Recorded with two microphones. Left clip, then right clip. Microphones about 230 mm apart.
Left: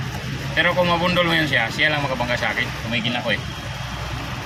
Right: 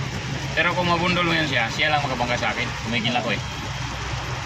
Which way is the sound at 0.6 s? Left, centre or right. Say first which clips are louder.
Left 3 dB; left.